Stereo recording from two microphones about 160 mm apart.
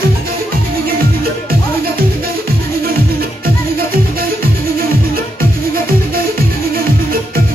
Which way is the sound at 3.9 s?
65° right (ahead or behind).